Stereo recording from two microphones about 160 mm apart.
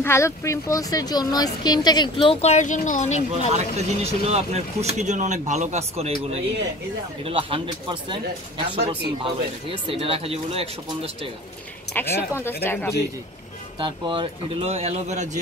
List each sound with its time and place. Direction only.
0.0 s speech: 15° left (ahead or behind); by 2.5 s 30° left (ahead or behind)
2.5 s speech: 50° left (ahead or behind)
3.5 s speech: 45° right (ahead or behind)
11.9 s speech: 15° left (ahead or behind)
13.7 s speech: 30° right (ahead or behind); by 15.2 s 45° right (ahead or behind)